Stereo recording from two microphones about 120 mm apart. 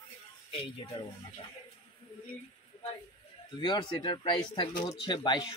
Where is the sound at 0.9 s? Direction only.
50° left (ahead or behind).